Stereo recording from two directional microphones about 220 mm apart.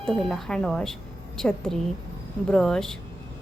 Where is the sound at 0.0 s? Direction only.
Centre (ahead or behind).